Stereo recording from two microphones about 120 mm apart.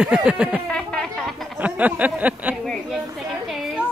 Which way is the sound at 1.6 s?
10° right (ahead or behind).